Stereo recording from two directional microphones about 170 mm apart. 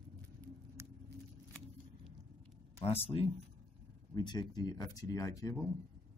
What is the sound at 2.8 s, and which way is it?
Speech, 35° left (ahead or behind).